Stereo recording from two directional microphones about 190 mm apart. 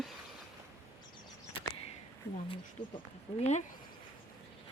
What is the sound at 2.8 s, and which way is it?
Speech, 25° left (ahead or behind).